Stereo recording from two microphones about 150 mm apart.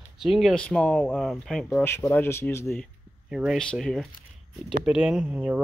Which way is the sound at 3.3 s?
5° right (ahead or behind).